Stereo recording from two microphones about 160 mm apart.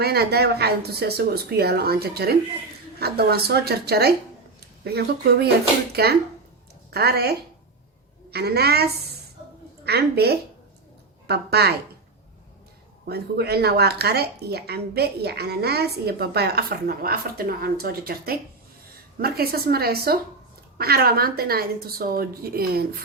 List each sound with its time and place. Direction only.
0.0 s speech: 80° right
13.1 s a woman's voice: 85° right; by 22.9 s 70° right (ahead or behind)